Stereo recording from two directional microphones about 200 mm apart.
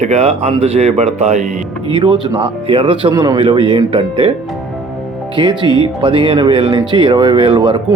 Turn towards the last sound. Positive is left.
turn(degrees=-20)  # may be behind; listen again after turning